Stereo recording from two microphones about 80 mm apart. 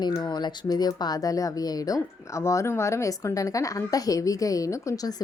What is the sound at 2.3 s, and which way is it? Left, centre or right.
A woman's voice, left.